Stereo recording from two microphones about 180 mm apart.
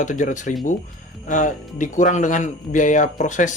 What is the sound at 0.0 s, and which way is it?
Speech, 45° left (ahead or behind).